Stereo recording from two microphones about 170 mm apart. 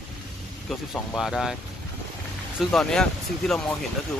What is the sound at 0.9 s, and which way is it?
Speech, 5° left (ahead or behind).